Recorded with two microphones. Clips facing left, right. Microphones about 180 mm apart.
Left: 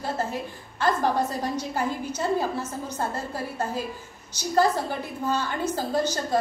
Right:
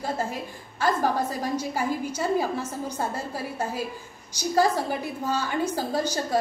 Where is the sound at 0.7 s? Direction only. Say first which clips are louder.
Left 1 dB; 10° right (ahead or behind).